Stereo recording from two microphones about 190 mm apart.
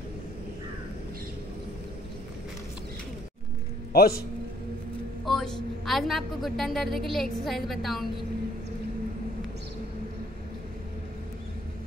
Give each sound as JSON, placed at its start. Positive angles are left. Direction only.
{"t": 3.9, "sound": "a man's voice", "side_deg": 55}
{"t": 5.2, "sound": "a woman's voice", "side_deg": 0}